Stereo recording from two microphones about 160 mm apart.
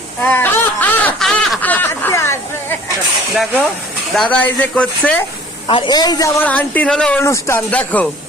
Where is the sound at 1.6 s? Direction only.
10° left (ahead or behind).